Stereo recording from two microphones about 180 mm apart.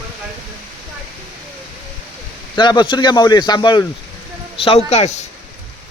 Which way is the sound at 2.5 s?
25° left (ahead or behind).